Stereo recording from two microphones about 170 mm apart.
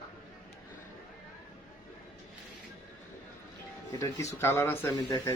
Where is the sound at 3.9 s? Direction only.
20° left (ahead or behind).